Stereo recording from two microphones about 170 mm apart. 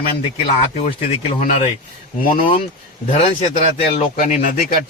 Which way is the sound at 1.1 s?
45° left (ahead or behind).